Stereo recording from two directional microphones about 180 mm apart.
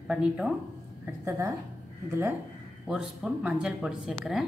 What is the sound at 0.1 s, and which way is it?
A woman's voice, 5° right (ahead or behind).